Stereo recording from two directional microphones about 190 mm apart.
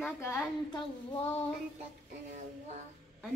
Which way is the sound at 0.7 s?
25° left (ahead or behind).